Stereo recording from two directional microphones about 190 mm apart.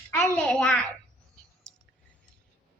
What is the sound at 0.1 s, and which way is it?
Speech, 5° left (ahead or behind).